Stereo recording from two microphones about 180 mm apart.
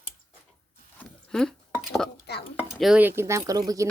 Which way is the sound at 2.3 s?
65° left (ahead or behind).